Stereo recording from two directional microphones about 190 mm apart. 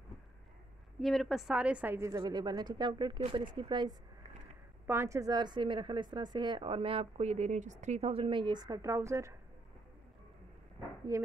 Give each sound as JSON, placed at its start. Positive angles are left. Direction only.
{"t": 1.0, "sound": "speech", "side_deg": 0}
{"t": 4.8, "sound": "speech", "side_deg": -15}